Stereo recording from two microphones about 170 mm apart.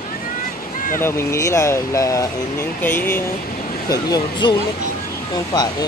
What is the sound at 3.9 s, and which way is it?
Speech, 25° left (ahead or behind).